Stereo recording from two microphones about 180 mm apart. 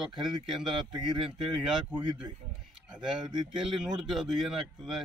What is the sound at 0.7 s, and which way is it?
Speech, 25° right (ahead or behind).